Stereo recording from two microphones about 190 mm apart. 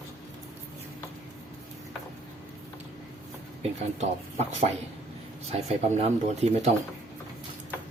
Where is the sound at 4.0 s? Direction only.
35° right (ahead or behind).